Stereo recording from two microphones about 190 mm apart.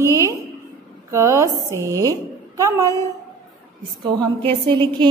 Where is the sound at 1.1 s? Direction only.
15° right (ahead or behind).